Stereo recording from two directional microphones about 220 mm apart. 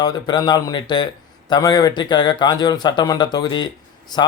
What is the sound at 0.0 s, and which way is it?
A man's voice, 20° left (ahead or behind).